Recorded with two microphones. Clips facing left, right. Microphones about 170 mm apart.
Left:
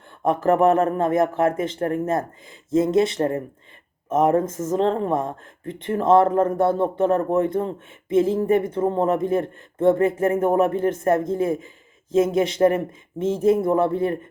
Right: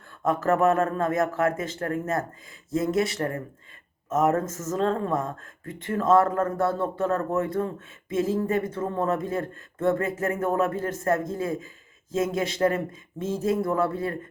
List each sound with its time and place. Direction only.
0.3 s speech: 25° left (ahead or behind)